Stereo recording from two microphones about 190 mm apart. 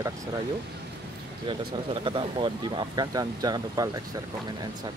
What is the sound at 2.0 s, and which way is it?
Speech, 25° right (ahead or behind).